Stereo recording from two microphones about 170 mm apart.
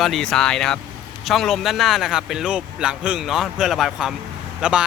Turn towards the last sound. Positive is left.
turn(degrees=-5)  # may be behind; listen again after turning